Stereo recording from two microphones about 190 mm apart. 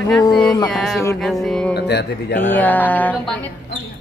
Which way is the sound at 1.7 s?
60° left (ahead or behind).